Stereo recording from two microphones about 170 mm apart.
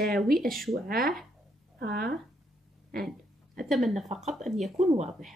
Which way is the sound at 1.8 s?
70° right (ahead or behind).